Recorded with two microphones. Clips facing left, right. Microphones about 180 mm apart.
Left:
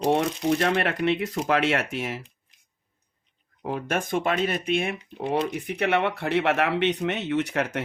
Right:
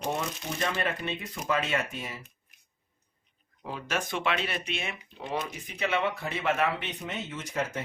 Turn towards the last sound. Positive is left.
turn(degrees=70)  # may be behind; listen again after turning